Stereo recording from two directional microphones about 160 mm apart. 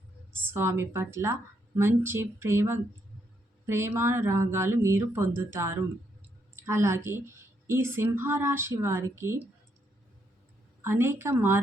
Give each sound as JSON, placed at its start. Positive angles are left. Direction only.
{"t": 0.5, "sound": "a woman's voice", "side_deg": -15}
{"t": 10.8, "sound": "a woman's voice", "side_deg": -15}